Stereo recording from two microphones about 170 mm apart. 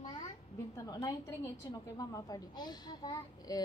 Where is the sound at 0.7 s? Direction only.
20° left (ahead or behind).